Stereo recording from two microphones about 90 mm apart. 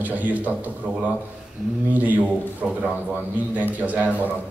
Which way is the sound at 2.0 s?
20° right (ahead or behind).